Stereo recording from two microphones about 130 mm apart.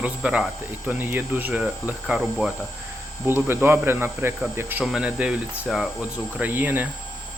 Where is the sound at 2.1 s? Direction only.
Centre (ahead or behind).